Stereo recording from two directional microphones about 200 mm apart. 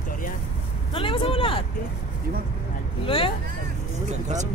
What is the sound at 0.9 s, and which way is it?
Vehicle, 25° left (ahead or behind).